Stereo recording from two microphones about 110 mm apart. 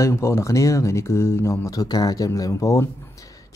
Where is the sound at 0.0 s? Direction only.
25° left (ahead or behind).